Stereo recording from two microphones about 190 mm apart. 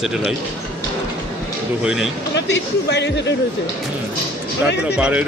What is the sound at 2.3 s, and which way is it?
Speech, 65° left (ahead or behind).